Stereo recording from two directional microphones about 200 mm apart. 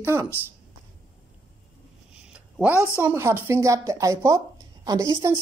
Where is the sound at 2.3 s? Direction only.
5° right (ahead or behind).